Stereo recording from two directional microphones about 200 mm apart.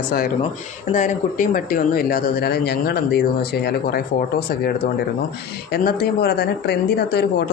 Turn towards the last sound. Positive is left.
turn(degrees=55)  # may be behind; listen again after turning